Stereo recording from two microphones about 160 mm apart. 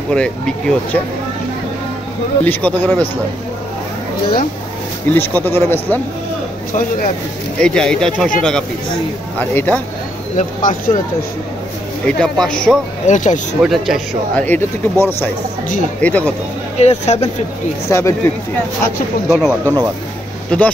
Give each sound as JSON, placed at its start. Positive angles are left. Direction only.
{"t": 0.1, "sound": "speech", "side_deg": 5}
{"t": 2.4, "sound": "speech", "side_deg": 10}
{"t": 5.0, "sound": "speech", "side_deg": 10}
{"t": 6.7, "sound": "speech", "side_deg": 55}
{"t": 7.6, "sound": "speech", "side_deg": 5}
{"t": 10.3, "sound": "speech", "side_deg": 55}
{"t": 12.2, "sound": "speech", "side_deg": 5}
{"t": 13.0, "sound": "speech", "side_deg": 50}
{"t": 13.6, "sound": "speech", "side_deg": 0}
{"t": 16.7, "sound": "speech", "side_deg": 45}
{"t": 17.8, "sound": "speech", "side_deg": 20}
{"t": 19.2, "sound": "speech", "side_deg": -5}
{"t": 19.6, "sound": "speech", "side_deg": -20}
{"t": 20.5, "sound": "speech", "side_deg": 10}